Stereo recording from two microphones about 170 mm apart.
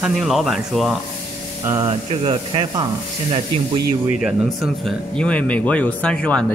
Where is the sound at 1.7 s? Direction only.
20° right (ahead or behind).